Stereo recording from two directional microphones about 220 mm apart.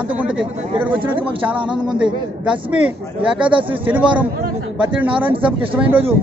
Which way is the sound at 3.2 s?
5° right (ahead or behind).